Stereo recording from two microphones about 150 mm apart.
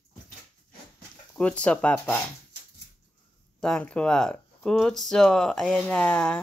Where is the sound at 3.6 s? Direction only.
5° left (ahead or behind).